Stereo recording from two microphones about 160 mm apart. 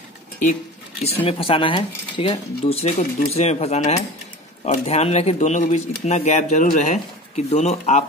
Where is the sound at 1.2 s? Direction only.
35° left (ahead or behind).